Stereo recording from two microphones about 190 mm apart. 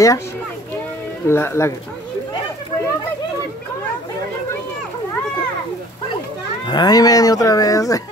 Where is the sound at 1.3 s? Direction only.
15° left (ahead or behind).